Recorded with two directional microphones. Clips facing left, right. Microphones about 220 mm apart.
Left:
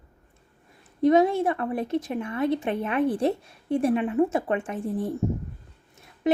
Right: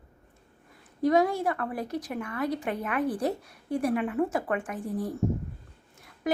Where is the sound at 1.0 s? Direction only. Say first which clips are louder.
Left 4 dB; 25° left (ahead or behind).